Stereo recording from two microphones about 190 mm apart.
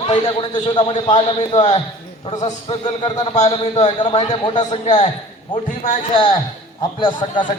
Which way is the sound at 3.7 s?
25° left (ahead or behind).